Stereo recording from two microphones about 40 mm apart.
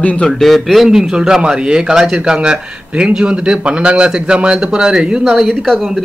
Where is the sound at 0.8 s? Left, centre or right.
Centre.